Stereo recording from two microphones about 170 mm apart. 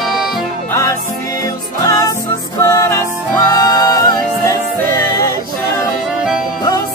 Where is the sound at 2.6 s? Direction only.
15° left (ahead or behind).